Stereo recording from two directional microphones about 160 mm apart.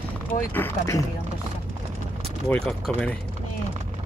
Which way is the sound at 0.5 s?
15° left (ahead or behind).